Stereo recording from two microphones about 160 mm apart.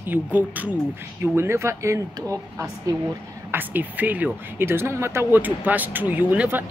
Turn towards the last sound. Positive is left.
turn(degrees=-10)  # may be behind; listen again after turning